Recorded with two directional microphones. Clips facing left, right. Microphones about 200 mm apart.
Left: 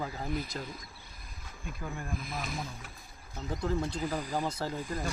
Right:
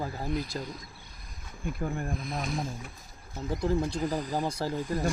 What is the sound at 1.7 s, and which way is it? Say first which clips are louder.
Speech: right 7 dB; 55° right (ahead or behind).